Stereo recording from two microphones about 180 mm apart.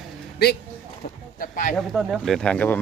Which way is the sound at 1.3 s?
50° left (ahead or behind).